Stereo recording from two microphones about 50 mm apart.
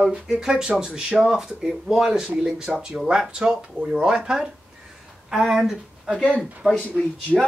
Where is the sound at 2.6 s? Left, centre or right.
Centre.